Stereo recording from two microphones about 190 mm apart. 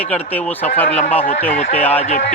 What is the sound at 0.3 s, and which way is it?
Speech, 10° left (ahead or behind).